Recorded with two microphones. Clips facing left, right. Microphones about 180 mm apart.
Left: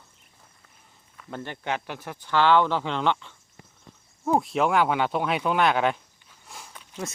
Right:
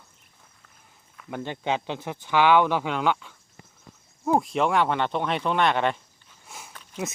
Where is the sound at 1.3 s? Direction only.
15° right (ahead or behind); by 6.9 s centre (ahead or behind).